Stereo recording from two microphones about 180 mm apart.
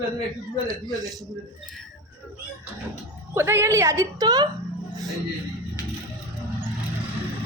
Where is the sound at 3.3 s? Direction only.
15° right (ahead or behind).